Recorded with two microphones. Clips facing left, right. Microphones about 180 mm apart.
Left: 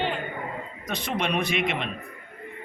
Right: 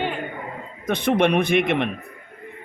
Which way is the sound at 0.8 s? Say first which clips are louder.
Right 10 dB; 55° right (ahead or behind).